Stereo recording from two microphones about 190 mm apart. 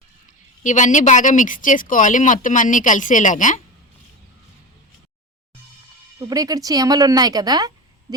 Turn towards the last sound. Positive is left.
turn(degrees=-20)  # may be behind; listen again after turning